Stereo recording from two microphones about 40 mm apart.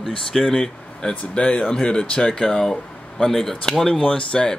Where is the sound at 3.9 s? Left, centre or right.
Left.